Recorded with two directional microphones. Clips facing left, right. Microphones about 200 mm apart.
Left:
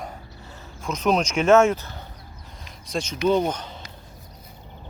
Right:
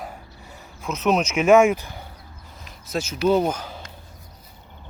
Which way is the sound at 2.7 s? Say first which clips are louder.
Right 1 dB; 5° right (ahead or behind).